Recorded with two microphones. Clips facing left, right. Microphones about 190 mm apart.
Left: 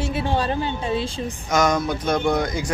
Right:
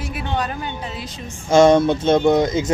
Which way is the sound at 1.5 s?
30° right (ahead or behind).